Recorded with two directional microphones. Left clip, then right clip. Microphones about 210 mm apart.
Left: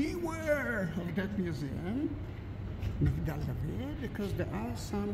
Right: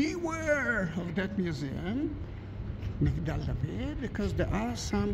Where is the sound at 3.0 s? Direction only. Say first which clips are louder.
Right 3 dB; 10° right (ahead or behind).